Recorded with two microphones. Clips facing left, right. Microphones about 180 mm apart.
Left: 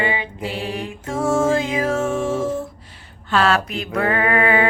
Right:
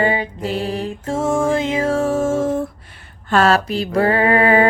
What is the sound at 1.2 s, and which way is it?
Music, 15° right (ahead or behind).